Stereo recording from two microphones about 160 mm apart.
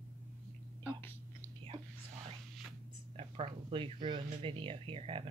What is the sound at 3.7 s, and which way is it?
Speech, 30° right (ahead or behind).